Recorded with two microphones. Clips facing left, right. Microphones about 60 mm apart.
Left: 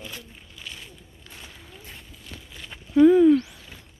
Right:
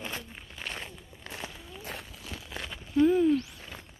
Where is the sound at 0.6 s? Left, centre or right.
Right.